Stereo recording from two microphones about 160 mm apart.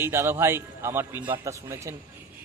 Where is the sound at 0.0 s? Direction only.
15° right (ahead or behind).